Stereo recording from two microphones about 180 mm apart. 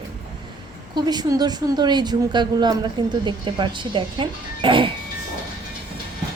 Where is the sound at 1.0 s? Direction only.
25° right (ahead or behind).